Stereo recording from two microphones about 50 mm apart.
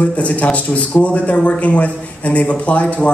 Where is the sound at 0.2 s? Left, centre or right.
Left.